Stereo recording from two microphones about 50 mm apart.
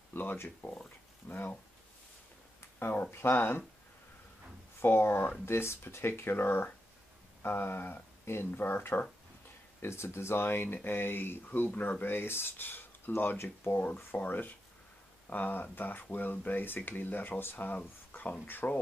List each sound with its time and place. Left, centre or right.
0.1 s speech: left
2.8 s speech: left
4.8 s speech: left
9.8 s speech: left
18.1 s a sound: left
18.6 s speech: left